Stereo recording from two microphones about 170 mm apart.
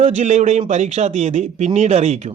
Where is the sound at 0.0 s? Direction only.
45° right (ahead or behind).